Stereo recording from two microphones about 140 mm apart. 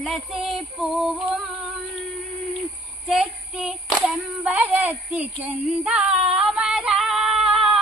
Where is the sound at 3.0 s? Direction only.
5° right (ahead or behind).